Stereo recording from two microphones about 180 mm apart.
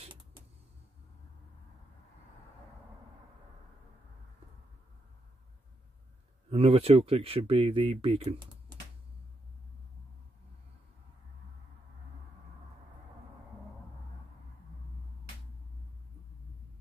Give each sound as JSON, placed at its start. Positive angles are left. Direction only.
{"t": 6.5, "sound": "speech", "side_deg": -35}